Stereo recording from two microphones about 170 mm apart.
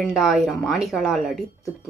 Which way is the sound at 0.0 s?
Centre (ahead or behind).